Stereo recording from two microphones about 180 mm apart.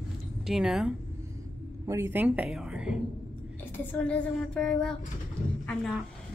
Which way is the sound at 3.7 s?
10° left (ahead or behind).